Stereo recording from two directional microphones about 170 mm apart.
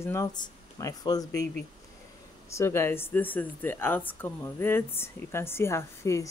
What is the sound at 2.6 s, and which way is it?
A woman's voice, 15° left (ahead or behind).